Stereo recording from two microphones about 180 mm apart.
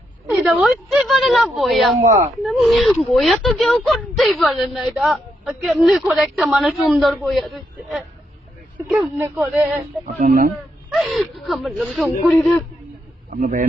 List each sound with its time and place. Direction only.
0.3 s speech: 5° right (ahead or behind)
2.0 s speech: 40° right (ahead or behind)
2.4 s speech: centre (ahead or behind)
10.2 s speech: 55° right (ahead or behind)
10.8 s a man's voice: centre (ahead or behind)